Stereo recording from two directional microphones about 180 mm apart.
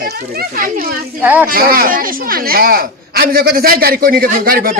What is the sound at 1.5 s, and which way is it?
A woman's voice, 55° right (ahead or behind).